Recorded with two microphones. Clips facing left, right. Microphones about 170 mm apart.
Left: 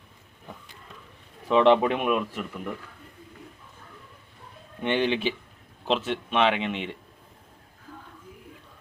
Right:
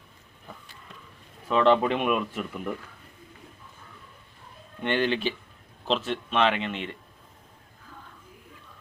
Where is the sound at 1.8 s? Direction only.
5° left (ahead or behind).